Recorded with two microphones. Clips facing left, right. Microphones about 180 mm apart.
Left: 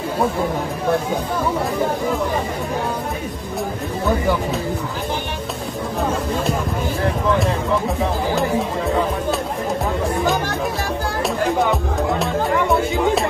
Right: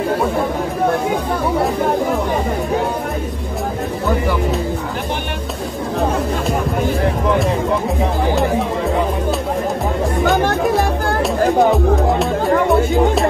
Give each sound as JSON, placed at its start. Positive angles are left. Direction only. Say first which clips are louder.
{"t": 10.3, "sound": "music", "louder": "right 7 dB", "side_deg": -55}
{"t": 11.2, "sound": "music", "louder": "right 5 dB", "side_deg": 0}